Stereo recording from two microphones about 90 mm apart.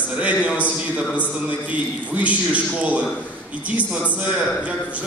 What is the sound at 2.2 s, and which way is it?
Speech, 15° right (ahead or behind).